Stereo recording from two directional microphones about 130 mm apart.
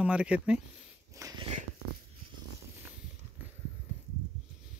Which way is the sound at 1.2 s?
25° right (ahead or behind).